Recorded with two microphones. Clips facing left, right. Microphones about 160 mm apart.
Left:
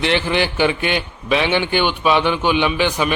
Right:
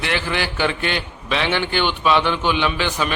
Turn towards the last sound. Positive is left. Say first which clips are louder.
# left 4 dB
turn(degrees=15)  # may be behind; listen again after turning